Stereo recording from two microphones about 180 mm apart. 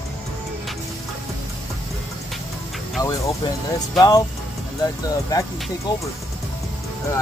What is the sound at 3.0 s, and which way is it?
Speech, 20° left (ahead or behind).